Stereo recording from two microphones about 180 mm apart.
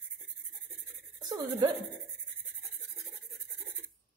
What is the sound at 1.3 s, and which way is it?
Speech, 25° right (ahead or behind).